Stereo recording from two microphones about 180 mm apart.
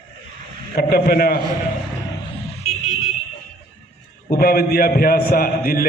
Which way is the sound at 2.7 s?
40° left (ahead or behind).